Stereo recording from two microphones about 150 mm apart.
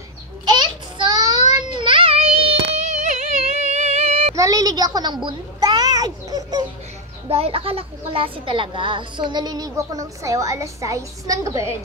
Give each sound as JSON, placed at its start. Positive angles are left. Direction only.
{"t": 0.5, "sound": "a sound", "side_deg": -30}
{"t": 1.8, "sound": "music", "side_deg": -35}
{"t": 4.4, "sound": "a child's voice", "side_deg": -25}
{"t": 7.2, "sound": "a woman's voice", "side_deg": -40}